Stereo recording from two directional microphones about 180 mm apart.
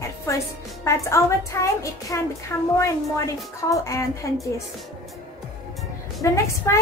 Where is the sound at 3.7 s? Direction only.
15° left (ahead or behind).